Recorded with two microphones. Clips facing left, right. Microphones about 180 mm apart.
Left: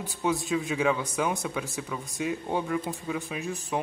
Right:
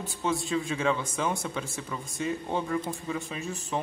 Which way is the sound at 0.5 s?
5° left (ahead or behind).